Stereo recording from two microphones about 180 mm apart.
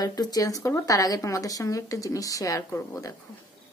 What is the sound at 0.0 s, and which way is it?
Speech, 20° left (ahead or behind).